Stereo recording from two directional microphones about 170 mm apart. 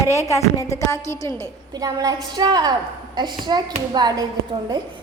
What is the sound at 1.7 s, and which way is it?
A woman's voice, 20° right (ahead or behind).